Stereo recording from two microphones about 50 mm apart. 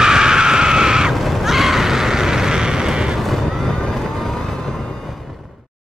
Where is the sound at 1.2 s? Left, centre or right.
Centre.